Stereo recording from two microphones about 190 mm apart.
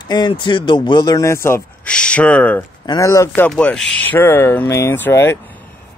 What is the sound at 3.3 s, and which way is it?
Speech, 5° left (ahead or behind).